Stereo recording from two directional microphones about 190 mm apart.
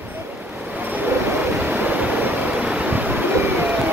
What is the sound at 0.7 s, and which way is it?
Vehicle, 10° right (ahead or behind).